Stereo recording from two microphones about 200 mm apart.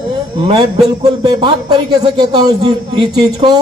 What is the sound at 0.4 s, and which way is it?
A man's voice, 25° right (ahead or behind).